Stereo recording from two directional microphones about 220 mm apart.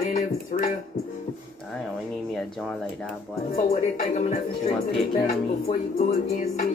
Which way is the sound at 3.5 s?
35° left (ahead or behind).